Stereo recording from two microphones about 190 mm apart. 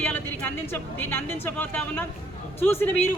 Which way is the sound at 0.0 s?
10° left (ahead or behind).